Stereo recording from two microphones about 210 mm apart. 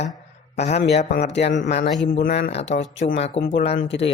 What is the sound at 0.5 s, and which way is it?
Speech, 30° left (ahead or behind).